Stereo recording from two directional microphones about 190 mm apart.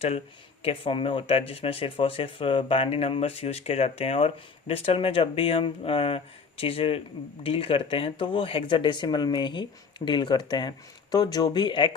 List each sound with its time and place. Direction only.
0.6 s speech: 30° left (ahead or behind)